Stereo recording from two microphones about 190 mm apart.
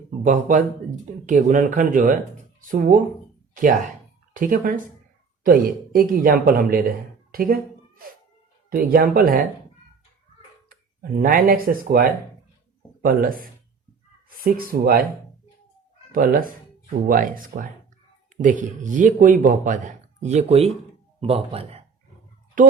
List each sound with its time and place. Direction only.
0.2 s speech: 40° right (ahead or behind)
4.4 s speech: 45° right (ahead or behind)
11.2 s speech: 50° right (ahead or behind)
16.1 s speech: 50° right (ahead or behind); by 21.8 s 30° right (ahead or behind)
22.6 s speech: 45° right (ahead or behind)